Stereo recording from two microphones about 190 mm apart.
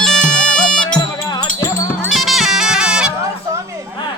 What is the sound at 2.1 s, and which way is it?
Music, centre (ahead or behind).